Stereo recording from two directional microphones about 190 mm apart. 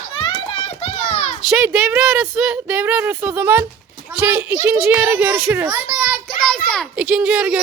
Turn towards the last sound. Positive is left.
turn(degrees=-5)  # may be behind; listen again after turning